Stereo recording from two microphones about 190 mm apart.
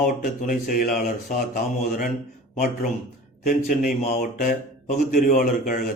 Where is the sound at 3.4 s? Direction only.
45° left (ahead or behind).